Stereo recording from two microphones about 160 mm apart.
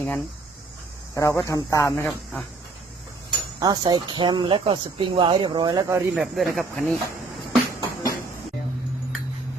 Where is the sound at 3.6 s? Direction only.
25° right (ahead or behind).